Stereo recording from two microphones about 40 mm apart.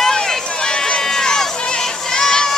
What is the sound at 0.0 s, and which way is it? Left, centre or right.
Run, centre.